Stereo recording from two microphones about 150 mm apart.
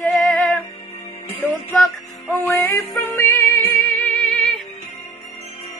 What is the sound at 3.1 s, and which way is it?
Music, 20° left (ahead or behind).